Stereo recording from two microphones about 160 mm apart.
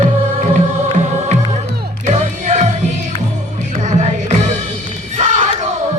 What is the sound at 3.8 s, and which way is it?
Music, 50° right (ahead or behind).